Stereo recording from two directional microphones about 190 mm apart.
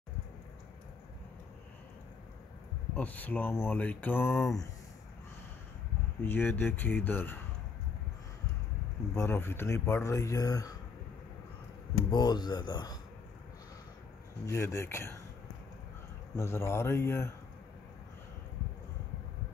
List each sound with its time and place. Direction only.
3.0 s speech: 10° left (ahead or behind)
6.2 s speech: 10° left (ahead or behind)
9.1 s speech: 15° left (ahead or behind)
12.1 s speech: 20° left (ahead or behind)
14.4 s speech: 15° left (ahead or behind)
16.3 s speech: 15° left (ahead or behind)